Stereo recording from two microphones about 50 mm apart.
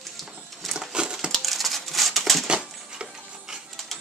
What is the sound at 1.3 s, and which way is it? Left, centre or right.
Dog, centre.